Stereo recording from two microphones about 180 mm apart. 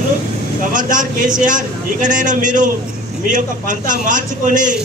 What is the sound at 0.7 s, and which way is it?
A man's voice, 45° right (ahead or behind).